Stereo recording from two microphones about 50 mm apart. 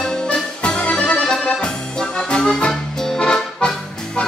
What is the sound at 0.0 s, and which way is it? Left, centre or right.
Accordion, centre.